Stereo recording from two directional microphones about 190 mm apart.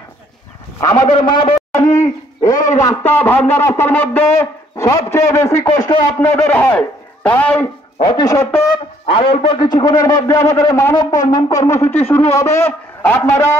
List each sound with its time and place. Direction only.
0.7 s a sound: 20° left (ahead or behind)
2.8 s a man's voice: 10° left (ahead or behind)
8.0 s a man's voice: 25° left (ahead or behind)